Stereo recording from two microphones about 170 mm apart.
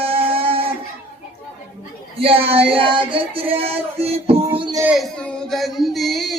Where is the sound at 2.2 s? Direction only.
35° right (ahead or behind).